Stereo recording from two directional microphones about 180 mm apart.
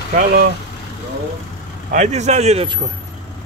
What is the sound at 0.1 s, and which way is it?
Speech, 50° right (ahead or behind).